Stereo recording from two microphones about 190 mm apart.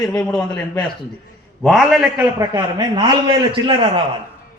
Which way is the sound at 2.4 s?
20° right (ahead or behind).